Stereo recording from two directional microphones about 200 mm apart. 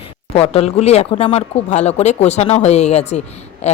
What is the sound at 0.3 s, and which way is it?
Speech, 30° left (ahead or behind).